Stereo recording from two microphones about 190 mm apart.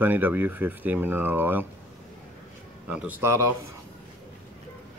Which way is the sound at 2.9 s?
5° right (ahead or behind).